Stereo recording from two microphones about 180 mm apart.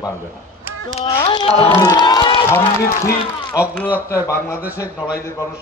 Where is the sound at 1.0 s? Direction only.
30° left (ahead or behind).